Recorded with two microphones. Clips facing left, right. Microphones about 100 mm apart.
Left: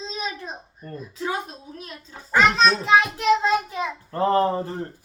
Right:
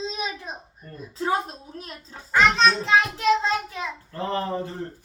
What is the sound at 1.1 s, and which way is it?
A woman's voice, 35° right (ahead or behind).